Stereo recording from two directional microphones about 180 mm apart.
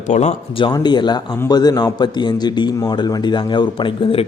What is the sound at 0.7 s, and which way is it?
A man's voice, 25° left (ahead or behind).